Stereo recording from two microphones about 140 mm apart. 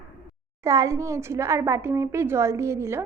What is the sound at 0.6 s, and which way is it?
A woman's voice, 25° right (ahead or behind).